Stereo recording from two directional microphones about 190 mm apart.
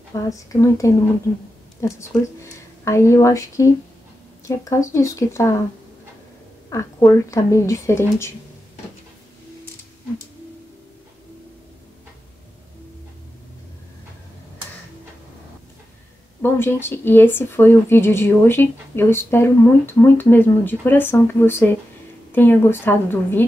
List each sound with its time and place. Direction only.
0.1 s speech: 15° left (ahead or behind)
6.7 s speech: 15° left (ahead or behind)
16.3 s speech: 10° left (ahead or behind)